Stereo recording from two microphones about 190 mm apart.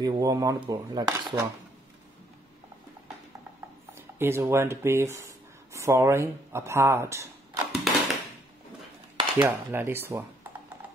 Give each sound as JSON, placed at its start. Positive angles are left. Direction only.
{"t": 0.0, "sound": "speech", "side_deg": -20}
{"t": 4.2, "sound": "speech", "side_deg": -15}
{"t": 7.9, "sound": "a sound", "side_deg": 0}
{"t": 9.4, "sound": "speech", "side_deg": -10}